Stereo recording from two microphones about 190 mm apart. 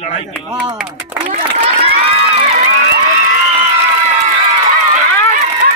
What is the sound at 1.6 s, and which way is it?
Run, 30° right (ahead or behind).